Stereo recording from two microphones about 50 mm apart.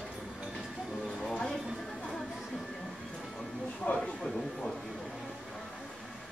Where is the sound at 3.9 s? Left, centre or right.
Left.